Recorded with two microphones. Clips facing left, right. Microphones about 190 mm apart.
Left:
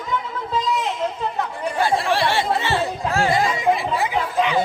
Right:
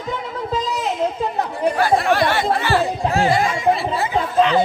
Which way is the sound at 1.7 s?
25° left (ahead or behind).